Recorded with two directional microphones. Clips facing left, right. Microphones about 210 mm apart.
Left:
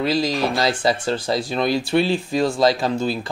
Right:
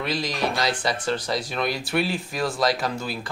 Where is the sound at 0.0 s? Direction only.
25° left (ahead or behind).